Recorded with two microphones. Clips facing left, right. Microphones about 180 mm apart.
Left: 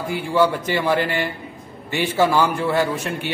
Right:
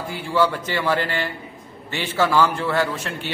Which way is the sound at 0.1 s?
15° left (ahead or behind).